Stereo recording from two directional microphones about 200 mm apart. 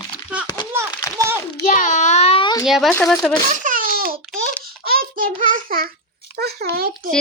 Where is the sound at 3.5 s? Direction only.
40° right (ahead or behind).